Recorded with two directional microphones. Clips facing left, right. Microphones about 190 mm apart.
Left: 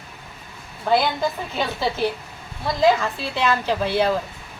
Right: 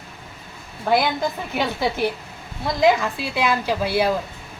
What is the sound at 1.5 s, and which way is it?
A woman's voice, 15° right (ahead or behind).